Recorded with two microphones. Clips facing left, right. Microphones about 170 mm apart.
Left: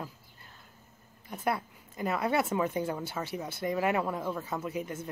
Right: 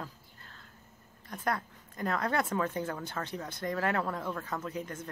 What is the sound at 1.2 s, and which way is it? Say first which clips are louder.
Speech: left 2 dB; 10° left (ahead or behind).